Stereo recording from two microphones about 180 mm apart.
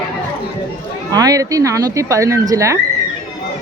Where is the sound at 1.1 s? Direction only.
20° right (ahead or behind).